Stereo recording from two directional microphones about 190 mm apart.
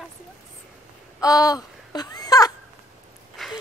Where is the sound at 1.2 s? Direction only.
20° left (ahead or behind).